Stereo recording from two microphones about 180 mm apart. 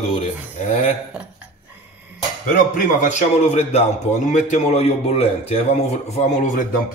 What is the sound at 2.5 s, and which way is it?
A man's voice, 45° left (ahead or behind).